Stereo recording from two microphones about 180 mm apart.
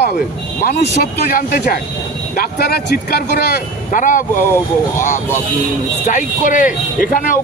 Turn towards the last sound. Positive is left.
turn(degrees=50)  # may be behind; listen again after turning